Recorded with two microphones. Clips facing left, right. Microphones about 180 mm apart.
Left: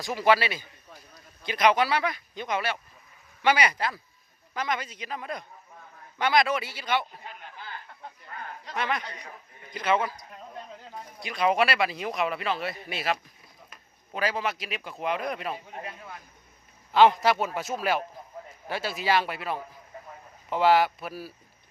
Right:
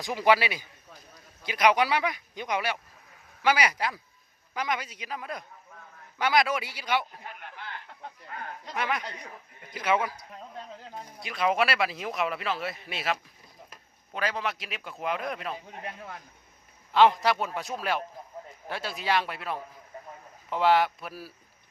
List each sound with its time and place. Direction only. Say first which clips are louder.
0.0 s speech: even; 15° right (ahead or behind)
8.7 s speech: left 1 dB; 10° right (ahead or behind)
11.2 s speech: left 2 dB; centre (ahead or behind)
16.9 s speech: left 2 dB; centre (ahead or behind)